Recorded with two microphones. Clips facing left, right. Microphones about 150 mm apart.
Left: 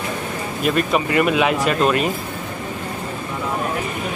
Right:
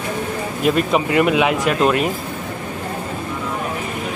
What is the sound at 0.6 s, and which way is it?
Speech, 15° right (ahead or behind).